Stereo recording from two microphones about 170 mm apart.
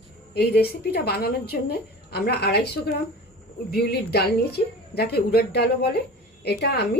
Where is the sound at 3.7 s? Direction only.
70° left (ahead or behind).